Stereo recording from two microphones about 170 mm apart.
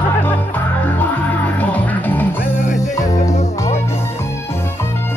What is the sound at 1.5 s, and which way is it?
Music, 10° left (ahead or behind).